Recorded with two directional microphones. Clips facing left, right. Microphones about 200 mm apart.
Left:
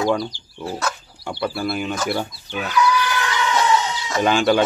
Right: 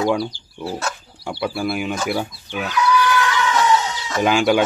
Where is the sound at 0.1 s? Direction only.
5° right (ahead or behind).